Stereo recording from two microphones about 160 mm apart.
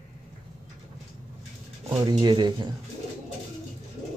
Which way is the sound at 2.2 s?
30° right (ahead or behind).